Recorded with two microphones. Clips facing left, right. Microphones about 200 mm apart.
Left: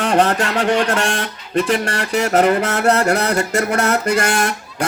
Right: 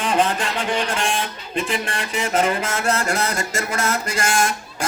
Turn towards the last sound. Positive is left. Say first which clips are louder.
# left 4 dB
turn(degrees=65)  # may be behind; listen again after turning